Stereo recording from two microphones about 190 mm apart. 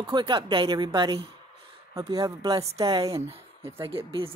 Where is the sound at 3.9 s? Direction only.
30° right (ahead or behind).